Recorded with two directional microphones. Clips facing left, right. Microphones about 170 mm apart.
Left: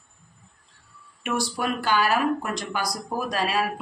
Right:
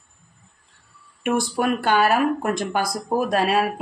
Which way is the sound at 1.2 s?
55° right (ahead or behind).